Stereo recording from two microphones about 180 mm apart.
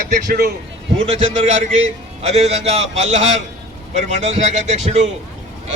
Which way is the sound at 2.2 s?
35° right (ahead or behind).